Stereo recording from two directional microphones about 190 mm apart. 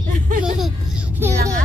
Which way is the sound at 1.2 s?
15° right (ahead or behind).